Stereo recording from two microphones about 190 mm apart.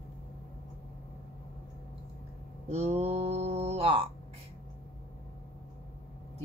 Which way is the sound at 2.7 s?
35° right (ahead or behind).